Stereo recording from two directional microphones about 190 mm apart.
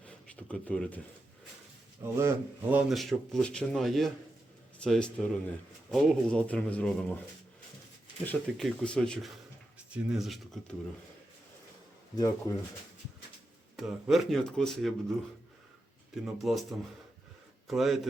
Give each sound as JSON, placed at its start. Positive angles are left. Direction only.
{"t": 0.0, "sound": "a sound", "side_deg": 5}
{"t": 2.1, "sound": "speech", "side_deg": -10}
{"t": 8.2, "sound": "speech", "side_deg": 5}
{"t": 12.1, "sound": "speech", "side_deg": 20}
{"t": 13.7, "sound": "speech", "side_deg": 0}
{"t": 16.2, "sound": "speech", "side_deg": 0}